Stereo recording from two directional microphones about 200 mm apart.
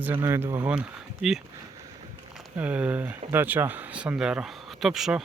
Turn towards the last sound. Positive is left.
turn(degrees=0)  # may be behind; listen again after turning